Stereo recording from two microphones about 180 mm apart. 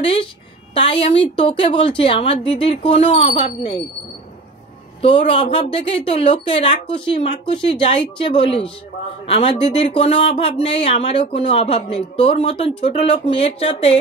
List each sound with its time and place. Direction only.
0.0 s speech: 30° left (ahead or behind)
5.0 s speech: 30° left (ahead or behind)